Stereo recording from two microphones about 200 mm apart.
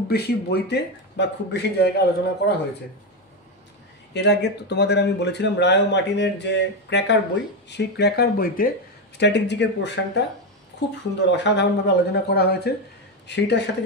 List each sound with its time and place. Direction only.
0.1 s speech: 55° left (ahead or behind)
4.1 s speech: 60° left (ahead or behind)
9.2 s speech: 60° left (ahead or behind)